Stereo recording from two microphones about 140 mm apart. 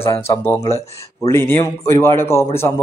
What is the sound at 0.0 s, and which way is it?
A man's voice, 15° left (ahead or behind).